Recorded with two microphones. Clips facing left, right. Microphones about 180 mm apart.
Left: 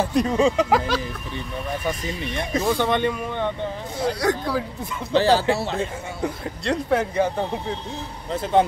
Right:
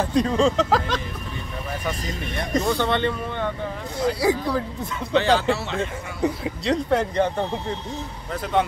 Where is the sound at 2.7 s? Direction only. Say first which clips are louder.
Left 1 dB; 15° left (ahead or behind).